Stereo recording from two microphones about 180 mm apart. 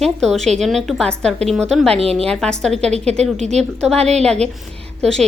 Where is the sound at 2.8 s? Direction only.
35° right (ahead or behind).